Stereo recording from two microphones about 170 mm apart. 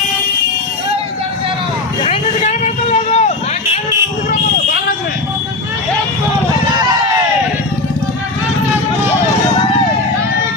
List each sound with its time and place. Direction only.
2.0 s vehicle: 40° left (ahead or behind)